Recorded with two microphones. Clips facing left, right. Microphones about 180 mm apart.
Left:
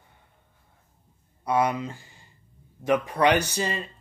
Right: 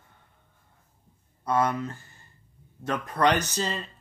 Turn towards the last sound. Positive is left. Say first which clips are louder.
# left 2 dB
turn(degrees=10)  # may be behind; listen again after turning